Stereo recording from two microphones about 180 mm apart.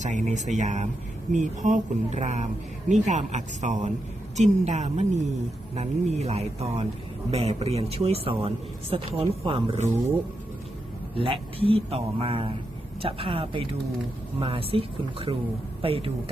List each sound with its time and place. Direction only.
0.0 s speech: 40° right (ahead or behind)
11.2 s speech: 30° right (ahead or behind)